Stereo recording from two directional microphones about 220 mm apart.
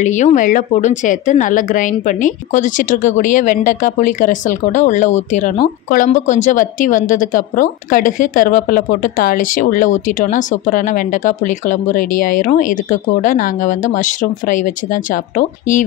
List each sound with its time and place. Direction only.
0.0 s a woman's voice: 35° left (ahead or behind)